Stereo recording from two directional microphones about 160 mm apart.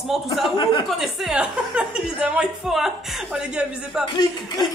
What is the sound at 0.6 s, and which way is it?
Speech, 30° left (ahead or behind).